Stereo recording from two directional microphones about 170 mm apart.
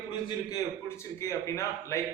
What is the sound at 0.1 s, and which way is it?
A man's voice, 20° left (ahead or behind).